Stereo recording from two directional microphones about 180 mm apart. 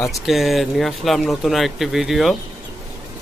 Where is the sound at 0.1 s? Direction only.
Centre (ahead or behind).